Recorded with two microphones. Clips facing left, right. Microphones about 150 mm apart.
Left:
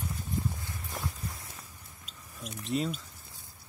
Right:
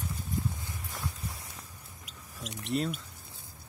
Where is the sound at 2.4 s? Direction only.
85° right.